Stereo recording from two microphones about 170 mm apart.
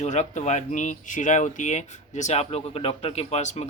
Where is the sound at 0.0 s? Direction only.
45° left (ahead or behind).